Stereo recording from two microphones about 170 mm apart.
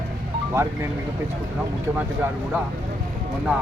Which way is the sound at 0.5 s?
15° right (ahead or behind).